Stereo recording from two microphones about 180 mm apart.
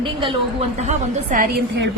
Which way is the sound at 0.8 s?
45° right (ahead or behind).